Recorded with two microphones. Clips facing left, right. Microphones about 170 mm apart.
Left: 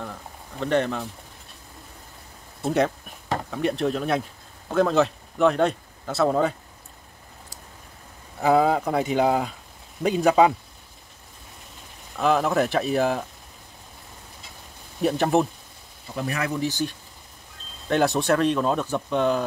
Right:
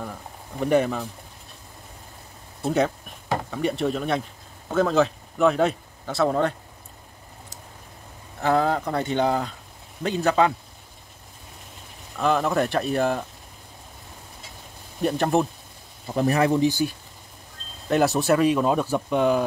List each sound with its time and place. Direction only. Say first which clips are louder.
0.6 s speech: right 2 dB; 10° right (ahead or behind)
2.6 s speech: even; centre (ahead or behind)
8.4 s speech: left 2 dB; 10° left (ahead or behind)
12.2 s speech: left 1 dB; centre (ahead or behind)
15.0 s speech: left 1 dB; centre (ahead or behind)
16.2 s speech: right 7 dB; 35° right (ahead or behind)
16.6 s speech: right 5 dB; 10° right (ahead or behind)